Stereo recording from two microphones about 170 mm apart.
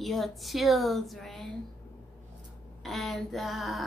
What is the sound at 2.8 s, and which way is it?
Speech, centre (ahead or behind).